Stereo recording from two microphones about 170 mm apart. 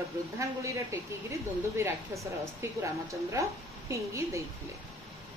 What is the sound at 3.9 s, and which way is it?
Speech, 15° right (ahead or behind).